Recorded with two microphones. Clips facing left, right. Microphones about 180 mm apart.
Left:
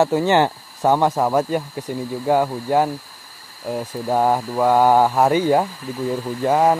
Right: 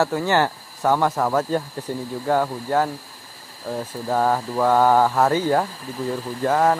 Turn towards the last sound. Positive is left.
turn(degrees=15)  # may be behind; listen again after turning